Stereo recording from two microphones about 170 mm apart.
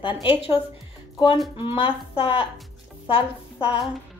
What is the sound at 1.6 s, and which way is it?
Speech, 30° left (ahead or behind).